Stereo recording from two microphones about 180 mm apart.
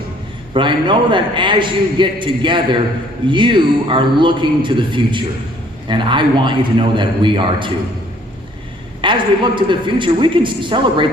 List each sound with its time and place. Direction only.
0.5 s a man's voice: 25° right (ahead or behind)
9.0 s a man's voice: 25° right (ahead or behind)